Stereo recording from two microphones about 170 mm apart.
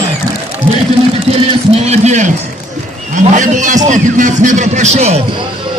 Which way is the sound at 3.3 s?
45° right (ahead or behind).